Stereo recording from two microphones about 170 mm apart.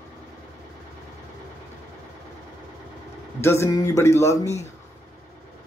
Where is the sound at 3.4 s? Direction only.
15° left (ahead or behind).